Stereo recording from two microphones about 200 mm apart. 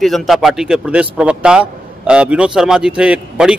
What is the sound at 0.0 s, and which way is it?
A man's voice, centre (ahead or behind).